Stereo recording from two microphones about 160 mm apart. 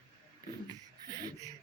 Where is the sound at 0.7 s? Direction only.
25° right (ahead or behind).